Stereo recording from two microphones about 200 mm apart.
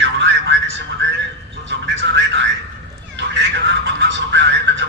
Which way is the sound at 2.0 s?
65° right (ahead or behind).